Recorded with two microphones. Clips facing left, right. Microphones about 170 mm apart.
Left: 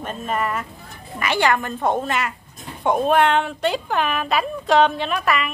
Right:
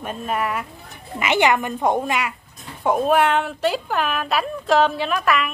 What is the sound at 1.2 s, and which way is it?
A woman's voice, 20° right (ahead or behind).